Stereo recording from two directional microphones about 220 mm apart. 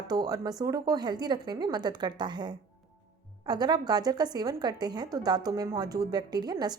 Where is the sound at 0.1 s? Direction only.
15° right (ahead or behind).